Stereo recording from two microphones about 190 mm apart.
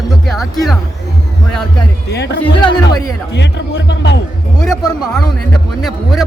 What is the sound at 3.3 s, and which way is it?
Speech, 65° left (ahead or behind).